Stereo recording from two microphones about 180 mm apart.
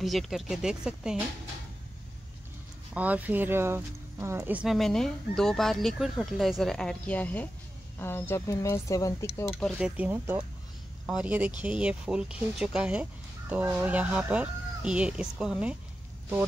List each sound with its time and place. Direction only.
0.0 s speech: centre (ahead or behind)
2.9 s speech: 10° right (ahead or behind); by 9.3 s 15° left (ahead or behind)
9.6 s speech: centre (ahead or behind)